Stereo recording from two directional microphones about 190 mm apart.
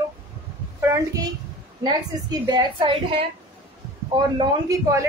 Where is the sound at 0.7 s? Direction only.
15° right (ahead or behind).